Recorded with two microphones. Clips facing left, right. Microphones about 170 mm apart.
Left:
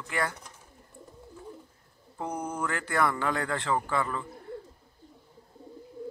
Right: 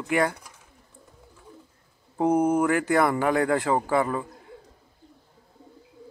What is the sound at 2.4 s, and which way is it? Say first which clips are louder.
Speech: right 10 dB; 25° right (ahead or behind).